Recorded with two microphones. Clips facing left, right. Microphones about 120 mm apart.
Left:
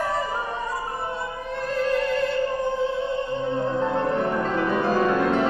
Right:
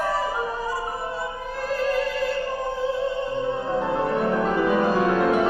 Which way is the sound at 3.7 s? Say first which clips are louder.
Even; 5° right (ahead or behind).